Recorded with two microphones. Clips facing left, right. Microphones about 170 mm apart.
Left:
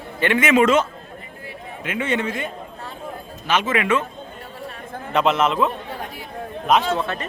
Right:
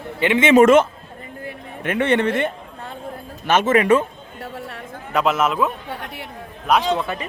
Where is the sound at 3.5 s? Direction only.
50° right (ahead or behind).